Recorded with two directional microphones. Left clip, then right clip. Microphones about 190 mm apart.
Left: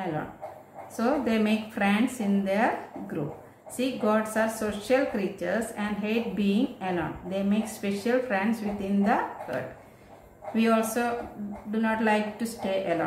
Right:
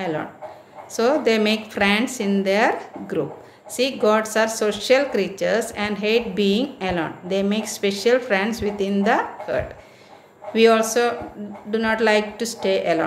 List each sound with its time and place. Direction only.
0.9 s a woman's voice: 45° right (ahead or behind)